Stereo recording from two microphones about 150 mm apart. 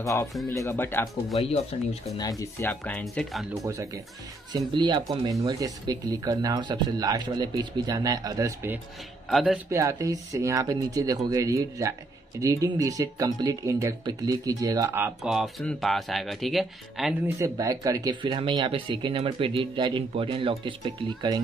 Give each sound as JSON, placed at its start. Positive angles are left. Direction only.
{"t": 0.0, "sound": "speech", "side_deg": 20}
{"t": 1.7, "sound": "speech", "side_deg": 45}
{"t": 2.1, "sound": "speech", "side_deg": 25}
{"t": 3.6, "sound": "speech", "side_deg": -20}
{"t": 4.5, "sound": "speech", "side_deg": -30}
{"t": 9.3, "sound": "speech", "side_deg": 0}
{"t": 9.7, "sound": "speech", "side_deg": -20}
{"t": 15.2, "sound": "speech", "side_deg": 0}
{"t": 17.4, "sound": "speech", "side_deg": -20}
{"t": 18.2, "sound": "speech", "side_deg": -35}